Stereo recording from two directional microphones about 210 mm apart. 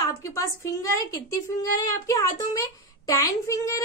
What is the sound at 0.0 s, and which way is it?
A woman's voice, 15° left (ahead or behind).